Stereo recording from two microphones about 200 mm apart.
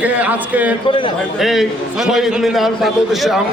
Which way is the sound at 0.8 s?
25° left (ahead or behind).